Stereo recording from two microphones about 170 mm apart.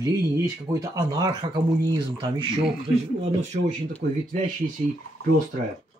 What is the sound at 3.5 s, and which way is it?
Speech, 60° right (ahead or behind).